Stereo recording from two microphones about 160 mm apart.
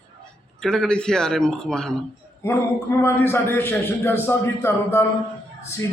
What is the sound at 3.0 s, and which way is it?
A man's voice, 15° left (ahead or behind).